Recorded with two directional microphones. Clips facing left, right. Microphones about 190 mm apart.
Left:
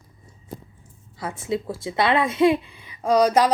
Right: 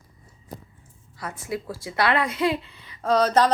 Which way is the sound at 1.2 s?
25° left (ahead or behind).